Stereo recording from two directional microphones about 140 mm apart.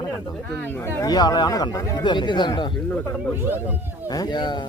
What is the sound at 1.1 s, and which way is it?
Speech, 30° left (ahead or behind).